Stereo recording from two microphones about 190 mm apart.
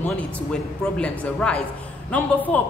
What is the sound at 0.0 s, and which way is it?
A woman's voice, 5° left (ahead or behind).